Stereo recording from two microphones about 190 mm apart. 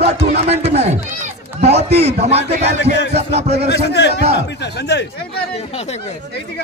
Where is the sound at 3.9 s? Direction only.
65° left (ahead or behind).